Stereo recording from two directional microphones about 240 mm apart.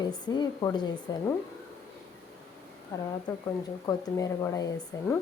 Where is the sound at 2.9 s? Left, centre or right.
Centre.